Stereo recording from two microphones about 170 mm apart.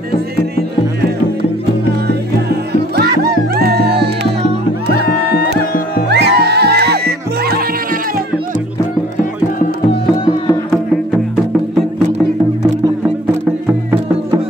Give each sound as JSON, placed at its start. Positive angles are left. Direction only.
{"t": 2.7, "sound": "music", "side_deg": -65}
{"t": 6.0, "sound": "music", "side_deg": -80}
{"t": 12.8, "sound": "music", "side_deg": -15}